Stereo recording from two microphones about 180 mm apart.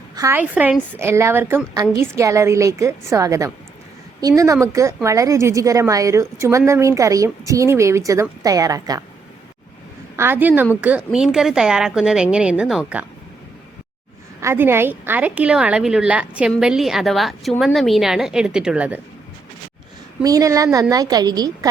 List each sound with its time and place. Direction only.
0.2 s a woman's voice: 10° right (ahead or behind)
10.2 s a woman's voice: 10° right (ahead or behind)
14.4 s a woman's voice: 10° right (ahead or behind)
20.2 s a woman's voice: 20° right (ahead or behind)